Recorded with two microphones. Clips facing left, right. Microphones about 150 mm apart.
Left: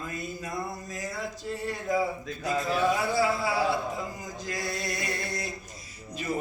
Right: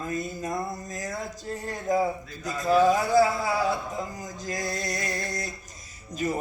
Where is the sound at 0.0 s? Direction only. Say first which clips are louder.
Right 5 dB; 45° right (ahead or behind).